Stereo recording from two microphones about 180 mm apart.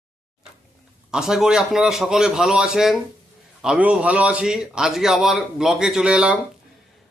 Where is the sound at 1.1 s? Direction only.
5° right (ahead or behind).